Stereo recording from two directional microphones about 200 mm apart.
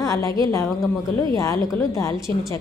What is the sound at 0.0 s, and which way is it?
A woman's voice, 15° left (ahead or behind).